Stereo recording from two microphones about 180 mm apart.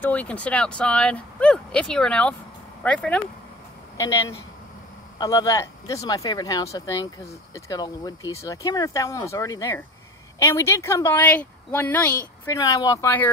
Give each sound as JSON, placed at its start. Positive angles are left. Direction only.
{"t": 0.0, "sound": "speech", "side_deg": 10}
{"t": 4.0, "sound": "speech", "side_deg": 15}
{"t": 12.4, "sound": "speech", "side_deg": 20}